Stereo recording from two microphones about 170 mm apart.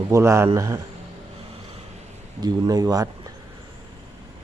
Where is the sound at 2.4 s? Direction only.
25° right (ahead or behind).